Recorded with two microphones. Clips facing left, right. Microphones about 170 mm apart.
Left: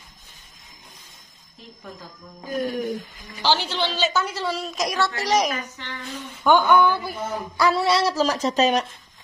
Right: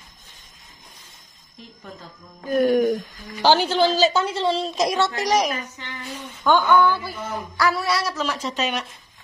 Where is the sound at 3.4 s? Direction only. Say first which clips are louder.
Right 6 dB; 50° right (ahead or behind); by 5.1 s 25° right (ahead or behind).